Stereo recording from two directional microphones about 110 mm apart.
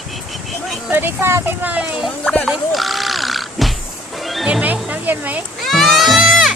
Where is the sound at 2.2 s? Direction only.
10° left (ahead or behind).